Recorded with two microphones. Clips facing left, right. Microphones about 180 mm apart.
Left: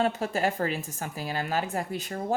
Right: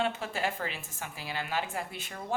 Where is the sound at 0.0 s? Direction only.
40° left (ahead or behind).